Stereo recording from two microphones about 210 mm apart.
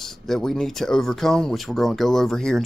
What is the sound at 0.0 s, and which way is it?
Speech, centre (ahead or behind).